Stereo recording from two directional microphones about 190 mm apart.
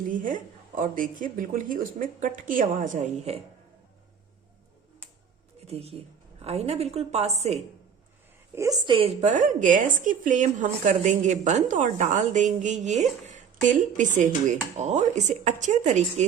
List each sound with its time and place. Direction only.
0.1 s a woman's voice: 45° right (ahead or behind)
5.6 s speech: 30° right (ahead or behind)
8.5 s a woman's voice: 20° right (ahead or behind)
9.3 s speech: 45° right (ahead or behind)